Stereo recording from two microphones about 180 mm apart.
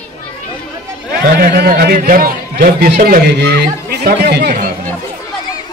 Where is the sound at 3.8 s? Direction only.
65° right (ahead or behind).